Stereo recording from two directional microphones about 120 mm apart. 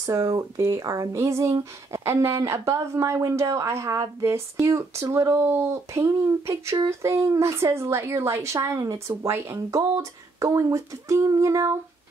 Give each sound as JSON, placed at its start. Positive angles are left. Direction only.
{"t": 0.0, "sound": "speech", "side_deg": -25}